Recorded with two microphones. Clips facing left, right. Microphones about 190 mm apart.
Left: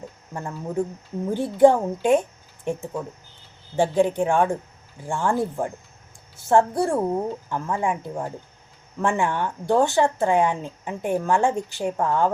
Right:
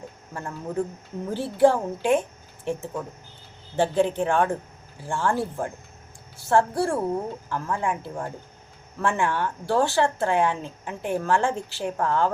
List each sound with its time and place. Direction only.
0.3 s a woman's voice: 10° left (ahead or behind)